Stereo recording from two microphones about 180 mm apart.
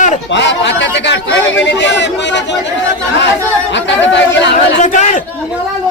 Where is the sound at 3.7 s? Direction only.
80° left.